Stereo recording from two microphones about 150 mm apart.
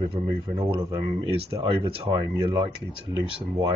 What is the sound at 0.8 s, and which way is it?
Speech, 20° right (ahead or behind).